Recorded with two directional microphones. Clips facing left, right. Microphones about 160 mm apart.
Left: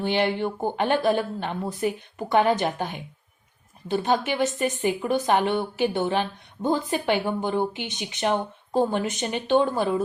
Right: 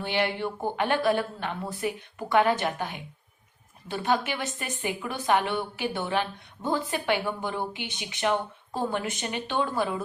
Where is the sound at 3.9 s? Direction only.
25° left (ahead or behind).